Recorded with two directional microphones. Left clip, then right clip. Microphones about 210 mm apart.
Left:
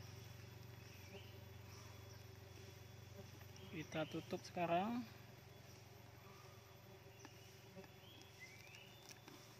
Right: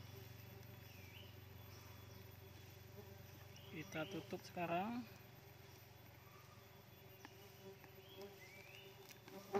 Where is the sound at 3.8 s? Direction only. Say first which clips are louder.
Left 2 dB; 20° left (ahead or behind).